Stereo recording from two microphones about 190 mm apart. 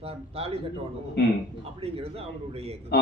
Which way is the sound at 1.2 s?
60° left (ahead or behind).